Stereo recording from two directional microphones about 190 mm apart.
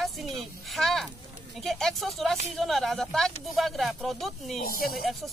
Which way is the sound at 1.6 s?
Centre (ahead or behind).